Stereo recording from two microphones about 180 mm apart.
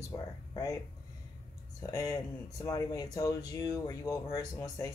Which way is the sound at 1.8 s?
20° left (ahead or behind).